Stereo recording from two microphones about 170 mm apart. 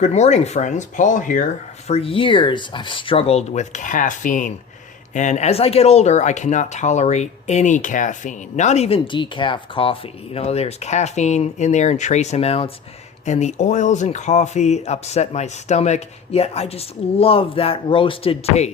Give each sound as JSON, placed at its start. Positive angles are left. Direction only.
{"t": 0.0, "sound": "speech", "side_deg": 40}
{"t": 1.9, "sound": "speech", "side_deg": 35}